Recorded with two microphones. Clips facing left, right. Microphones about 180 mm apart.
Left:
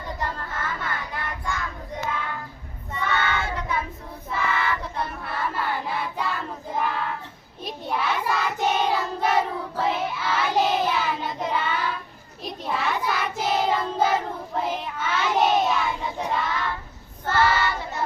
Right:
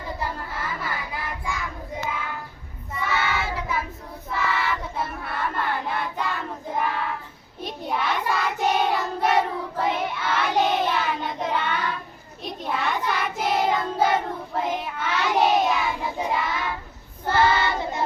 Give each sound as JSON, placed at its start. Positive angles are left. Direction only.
{"t": 0.2, "sound": "child singing", "side_deg": -10}
{"t": 3.0, "sound": "child singing", "side_deg": -5}